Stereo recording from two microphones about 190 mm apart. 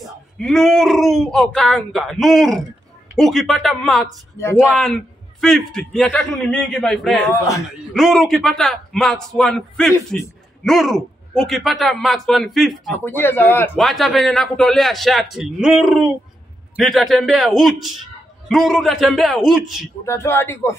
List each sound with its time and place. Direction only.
0.0 s a man's voice: 5° left (ahead or behind)
7.2 s speech: 15° left (ahead or behind)
7.9 s a man's voice: centre (ahead or behind)
12.9 s speech: 10° left (ahead or behind)
13.8 s a man's voice: centre (ahead or behind)
20.1 s speech: 15° left (ahead or behind)